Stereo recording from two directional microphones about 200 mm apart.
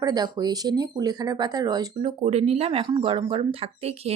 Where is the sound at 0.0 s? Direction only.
20° right (ahead or behind).